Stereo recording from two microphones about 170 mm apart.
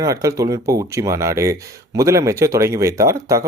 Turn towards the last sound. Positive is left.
turn(degrees=-20)  # may be behind; listen again after turning